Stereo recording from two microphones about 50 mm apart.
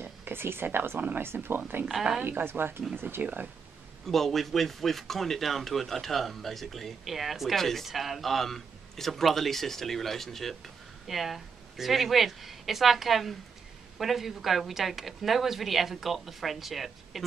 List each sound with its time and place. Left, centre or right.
0.0 s speech: right
4.1 s speech: centre